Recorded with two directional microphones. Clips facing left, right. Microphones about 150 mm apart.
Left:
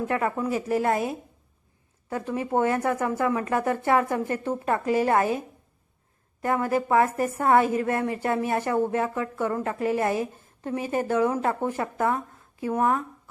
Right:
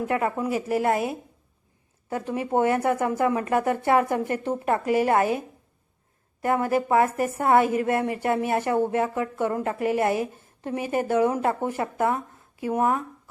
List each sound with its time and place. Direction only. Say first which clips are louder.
0.0 s a woman's voice: right 1 dB; 20° right (ahead or behind)
6.4 s a woman's voice: right 1 dB; 20° right (ahead or behind)